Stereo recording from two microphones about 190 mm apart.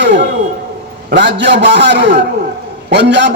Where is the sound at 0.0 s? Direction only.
70° right (ahead or behind).